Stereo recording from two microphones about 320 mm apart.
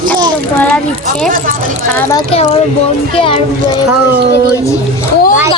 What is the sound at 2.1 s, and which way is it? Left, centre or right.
A child's voice, centre.